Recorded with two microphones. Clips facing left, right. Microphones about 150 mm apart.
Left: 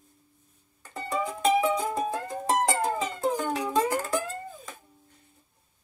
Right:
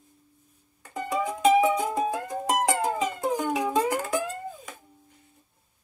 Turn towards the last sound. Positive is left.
turn(degrees=-10)  # may be behind; listen again after turning